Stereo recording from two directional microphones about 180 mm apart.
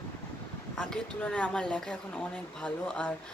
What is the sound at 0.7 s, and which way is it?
Speech, 5° left (ahead or behind).